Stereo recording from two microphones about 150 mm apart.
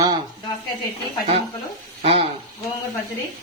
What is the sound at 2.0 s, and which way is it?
Speech, 40° right (ahead or behind).